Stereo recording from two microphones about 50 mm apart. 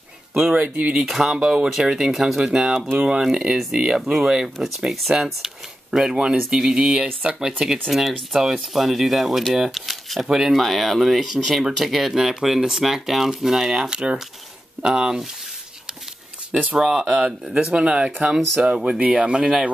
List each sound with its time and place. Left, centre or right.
0.6 s speech: right
1.0 s speech: centre
4.6 s speech: centre
13.8 s speech: centre
16.7 s speech: centre
18.9 s speech: right